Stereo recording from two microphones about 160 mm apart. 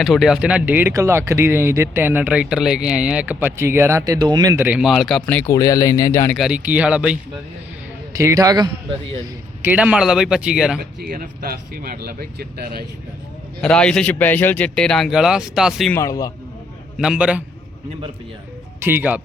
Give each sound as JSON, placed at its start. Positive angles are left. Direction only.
{"t": 0.0, "sound": "speech", "side_deg": 0}
{"t": 4.6, "sound": "speech", "side_deg": -5}
{"t": 5.5, "sound": "speech", "side_deg": 20}
{"t": 6.3, "sound": "speech", "side_deg": -5}
{"t": 8.2, "sound": "a man's voice", "side_deg": -20}
{"t": 9.6, "sound": "speech", "side_deg": -10}
{"t": 10.8, "sound": "speech", "side_deg": -65}
{"t": 13.6, "sound": "speech", "side_deg": 5}
{"t": 15.9, "sound": "speech", "side_deg": 20}
{"t": 17.0, "sound": "speech", "side_deg": -5}
{"t": 18.8, "sound": "speech", "side_deg": -15}